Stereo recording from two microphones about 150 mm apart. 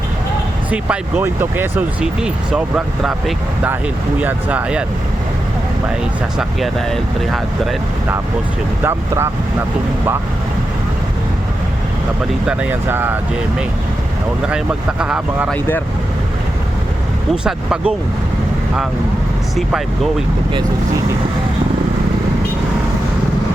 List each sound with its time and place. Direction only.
0.7 s speech: 10° right (ahead or behind)
6.6 s speech: centre (ahead or behind)
8.8 s speech: 15° right (ahead or behind)
12.5 s speech: 10° right (ahead or behind)
14.4 s speech: 5° right (ahead or behind)
15.4 s speech: 10° left (ahead or behind)
17.3 s speech: 5° right (ahead or behind)
19.5 s speech: centre (ahead or behind)